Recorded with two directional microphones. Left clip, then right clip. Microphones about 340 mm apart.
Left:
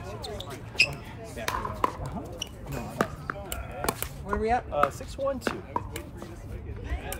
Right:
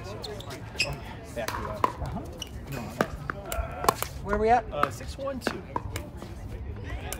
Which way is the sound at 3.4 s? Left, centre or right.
Centre.